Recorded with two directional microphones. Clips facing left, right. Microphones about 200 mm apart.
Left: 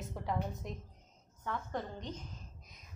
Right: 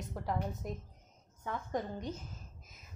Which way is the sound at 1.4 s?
15° right (ahead or behind).